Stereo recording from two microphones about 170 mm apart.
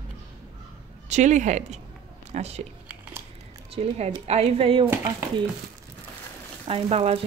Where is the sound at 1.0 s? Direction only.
45° right (ahead or behind).